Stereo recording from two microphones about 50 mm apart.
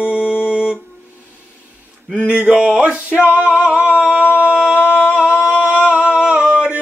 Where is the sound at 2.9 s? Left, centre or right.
Right.